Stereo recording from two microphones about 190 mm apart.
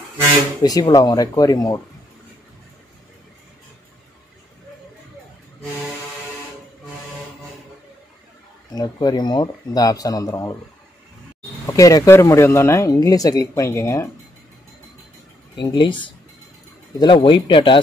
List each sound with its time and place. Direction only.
0.6 s speech: 20° left (ahead or behind)
8.7 s speech: 20° left (ahead or behind)
11.6 s speech: 20° left (ahead or behind)
15.5 s speech: 25° left (ahead or behind)